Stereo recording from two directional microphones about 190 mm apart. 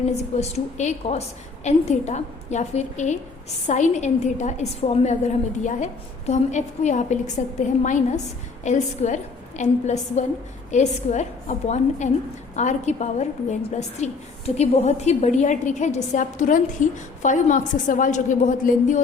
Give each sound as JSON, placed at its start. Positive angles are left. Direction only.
{"t": 0.1, "sound": "a woman's voice", "side_deg": 35}